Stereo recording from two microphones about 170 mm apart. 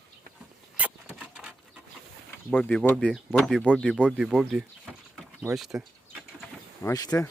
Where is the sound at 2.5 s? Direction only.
5° left (ahead or behind).